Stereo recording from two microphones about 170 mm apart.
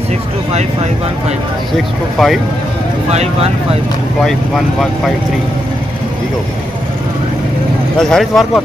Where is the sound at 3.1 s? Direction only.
40° right (ahead or behind).